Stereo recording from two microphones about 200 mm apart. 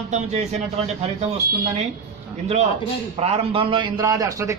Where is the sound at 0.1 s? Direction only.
35° right (ahead or behind).